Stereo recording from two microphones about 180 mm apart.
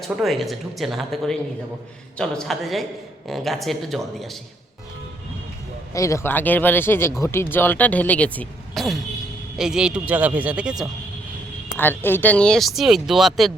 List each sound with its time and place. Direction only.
0.2 s speech: centre (ahead or behind)
5.9 s speech: 15° left (ahead or behind); by 10.8 s 5° right (ahead or behind)
11.8 s speech: 10° left (ahead or behind)